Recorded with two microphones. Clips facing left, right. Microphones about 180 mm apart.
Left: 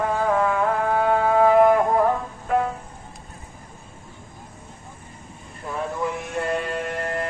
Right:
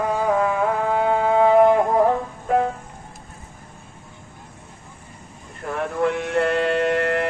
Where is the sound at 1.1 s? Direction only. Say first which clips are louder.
Even; 20° right (ahead or behind).